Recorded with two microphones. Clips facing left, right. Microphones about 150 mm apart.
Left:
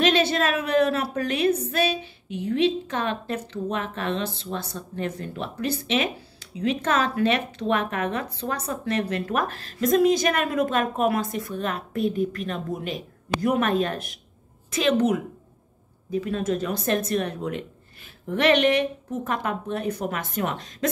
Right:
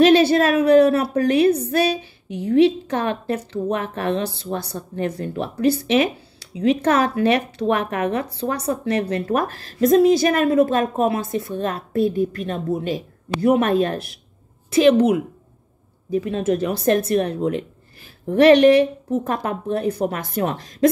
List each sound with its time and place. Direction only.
0.0 s a woman's voice: 35° right (ahead or behind)
16.1 s a woman's voice: 35° right (ahead or behind)